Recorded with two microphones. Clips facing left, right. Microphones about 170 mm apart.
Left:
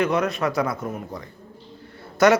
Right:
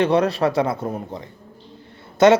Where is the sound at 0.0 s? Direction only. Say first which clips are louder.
Right 4 dB; 30° right (ahead or behind).